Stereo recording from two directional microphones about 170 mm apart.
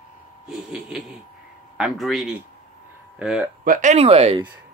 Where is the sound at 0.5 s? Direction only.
Centre (ahead or behind).